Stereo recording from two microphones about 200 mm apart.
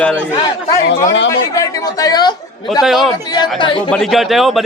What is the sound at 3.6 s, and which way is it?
Speech, 25° left (ahead or behind).